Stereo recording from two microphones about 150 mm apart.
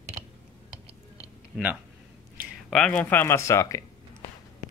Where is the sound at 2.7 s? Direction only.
5° left (ahead or behind).